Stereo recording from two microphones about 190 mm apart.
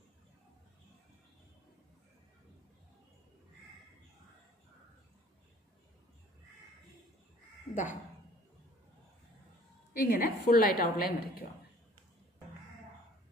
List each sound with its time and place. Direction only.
7.7 s crow: 20° left (ahead or behind)
10.0 s a woman's voice: 50° left (ahead or behind)